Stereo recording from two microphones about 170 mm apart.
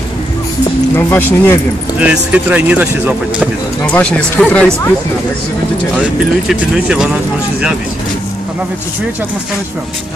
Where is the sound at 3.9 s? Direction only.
5° left (ahead or behind).